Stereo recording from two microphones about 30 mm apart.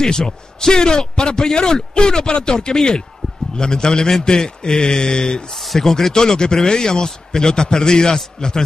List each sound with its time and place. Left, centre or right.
0.0 s a man's voice: left
6.1 s a man's voice: left